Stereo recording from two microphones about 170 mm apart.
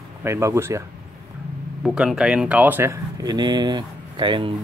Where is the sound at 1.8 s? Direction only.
5° right (ahead or behind).